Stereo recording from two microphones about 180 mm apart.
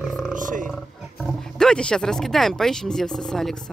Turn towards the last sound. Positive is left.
turn(degrees=5)  # may be behind; listen again after turning